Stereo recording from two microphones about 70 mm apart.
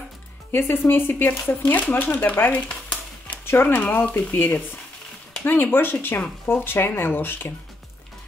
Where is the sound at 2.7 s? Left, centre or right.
Centre.